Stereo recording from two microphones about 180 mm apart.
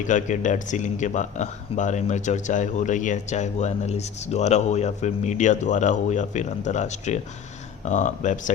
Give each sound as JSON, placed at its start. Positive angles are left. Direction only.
{"t": 0.0, "sound": "speech", "side_deg": 45}